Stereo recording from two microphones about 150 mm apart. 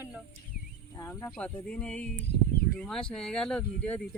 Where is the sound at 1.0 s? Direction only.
20° left (ahead or behind).